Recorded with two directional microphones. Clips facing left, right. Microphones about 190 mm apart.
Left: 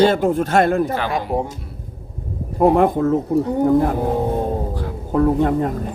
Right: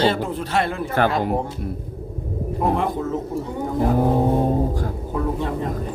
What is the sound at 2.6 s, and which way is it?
Speech, 55° left (ahead or behind).